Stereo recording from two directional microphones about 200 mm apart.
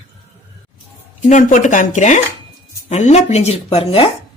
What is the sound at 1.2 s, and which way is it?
Speech, 40° left (ahead or behind).